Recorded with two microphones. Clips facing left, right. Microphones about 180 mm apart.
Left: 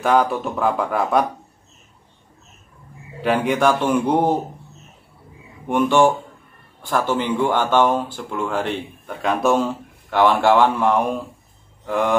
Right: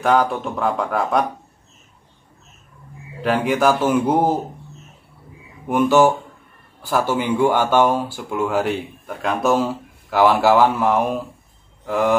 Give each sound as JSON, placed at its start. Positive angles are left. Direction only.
{"t": 0.0, "sound": "speech", "side_deg": 0}
{"t": 3.2, "sound": "speech", "side_deg": 0}
{"t": 5.7, "sound": "speech", "side_deg": -5}